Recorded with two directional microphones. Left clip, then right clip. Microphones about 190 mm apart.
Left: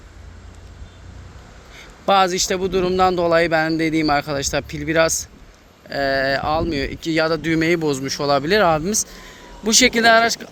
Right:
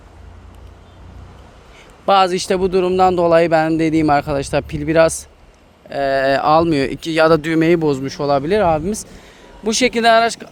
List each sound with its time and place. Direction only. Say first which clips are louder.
1.7 s speech: right 3 dB; 20° right (ahead or behind)